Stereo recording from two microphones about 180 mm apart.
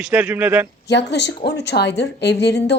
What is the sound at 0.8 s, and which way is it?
A woman's voice, 70° left (ahead or behind).